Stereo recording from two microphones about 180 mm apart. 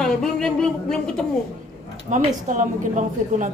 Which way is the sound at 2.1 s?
45° right (ahead or behind).